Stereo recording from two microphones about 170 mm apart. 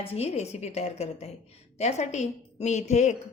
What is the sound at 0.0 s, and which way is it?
A woman's voice, 35° left (ahead or behind).